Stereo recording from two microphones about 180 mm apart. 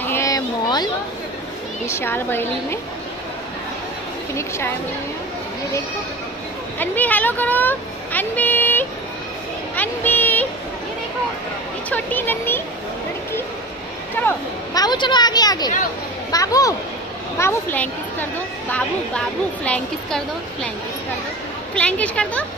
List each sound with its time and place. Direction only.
0.0 s a sound: 15° left (ahead or behind)
1.9 s speech: 15° left (ahead or behind)
4.4 s speech: 15° left (ahead or behind)
6.8 s speech: 10° left (ahead or behind)
9.8 s a sound: 10° left (ahead or behind)
11.9 s speech: 10° left (ahead or behind)
14.1 s speech: 15° left (ahead or behind)
21.7 s speech: 5° left (ahead or behind)